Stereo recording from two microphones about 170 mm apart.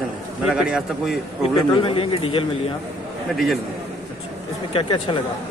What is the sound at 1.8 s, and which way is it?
Speech, 35° left (ahead or behind).